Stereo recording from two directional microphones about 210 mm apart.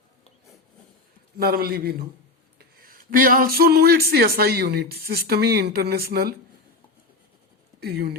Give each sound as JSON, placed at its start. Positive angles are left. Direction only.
{"t": 1.4, "sound": "speech", "side_deg": -45}
{"t": 7.8, "sound": "speech", "side_deg": -50}